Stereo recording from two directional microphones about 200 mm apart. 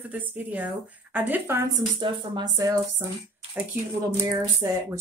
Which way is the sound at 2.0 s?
20° right (ahead or behind).